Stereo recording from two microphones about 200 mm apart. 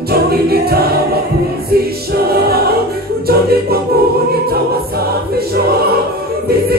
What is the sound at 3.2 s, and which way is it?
Music, 50° right (ahead or behind).